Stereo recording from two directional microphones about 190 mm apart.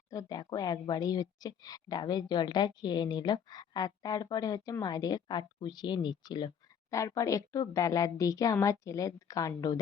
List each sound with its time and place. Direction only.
0.1 s a woman's voice: 20° left (ahead or behind)